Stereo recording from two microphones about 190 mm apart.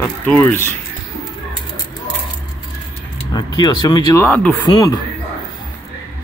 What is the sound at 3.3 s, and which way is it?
Speech, 20° left (ahead or behind).